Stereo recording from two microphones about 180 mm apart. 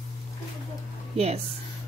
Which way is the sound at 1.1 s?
35° right (ahead or behind).